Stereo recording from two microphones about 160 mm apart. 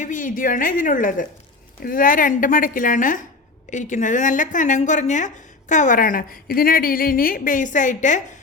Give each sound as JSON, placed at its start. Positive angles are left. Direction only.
{"t": 0.0, "sound": "a woman's voice", "side_deg": 55}